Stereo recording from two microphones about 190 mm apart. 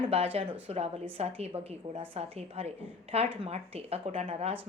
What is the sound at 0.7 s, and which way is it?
A woman's voice, 35° right (ahead or behind).